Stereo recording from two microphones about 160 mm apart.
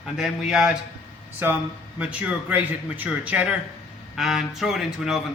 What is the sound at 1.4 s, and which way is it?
Speech, 15° right (ahead or behind).